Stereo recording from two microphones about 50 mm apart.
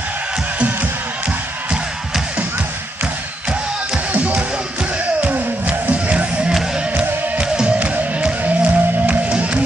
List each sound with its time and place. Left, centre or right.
4.1 s music: right